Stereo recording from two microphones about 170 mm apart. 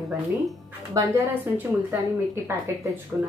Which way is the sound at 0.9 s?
15° right (ahead or behind).